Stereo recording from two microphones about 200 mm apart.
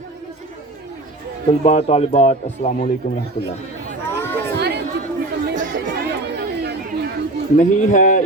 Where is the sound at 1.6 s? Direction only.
30° left (ahead or behind).